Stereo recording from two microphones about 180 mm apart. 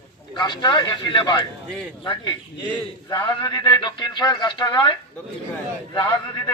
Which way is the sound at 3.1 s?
20° left (ahead or behind).